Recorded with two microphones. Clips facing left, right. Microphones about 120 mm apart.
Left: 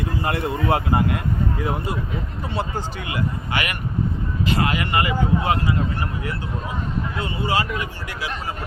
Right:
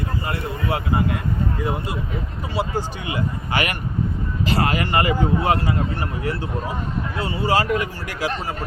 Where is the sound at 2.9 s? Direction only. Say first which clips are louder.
Right 1 dB; 25° right (ahead or behind).